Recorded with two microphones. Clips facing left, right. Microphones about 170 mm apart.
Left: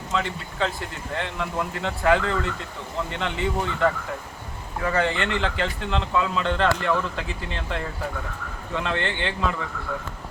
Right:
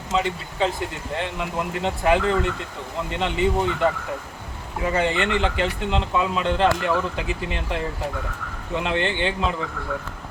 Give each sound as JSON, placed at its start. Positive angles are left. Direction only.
{"t": 0.1, "sound": "speech", "side_deg": -20}